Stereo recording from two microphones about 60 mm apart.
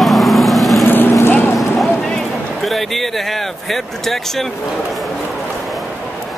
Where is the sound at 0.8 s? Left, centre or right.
Left.